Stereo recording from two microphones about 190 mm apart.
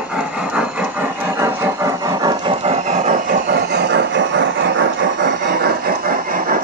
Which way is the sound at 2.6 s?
40° right (ahead or behind).